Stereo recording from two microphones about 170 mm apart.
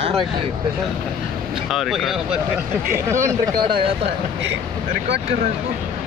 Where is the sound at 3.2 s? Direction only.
20° right (ahead or behind).